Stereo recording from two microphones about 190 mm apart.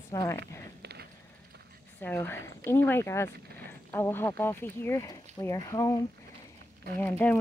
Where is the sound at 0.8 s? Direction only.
60° right (ahead or behind).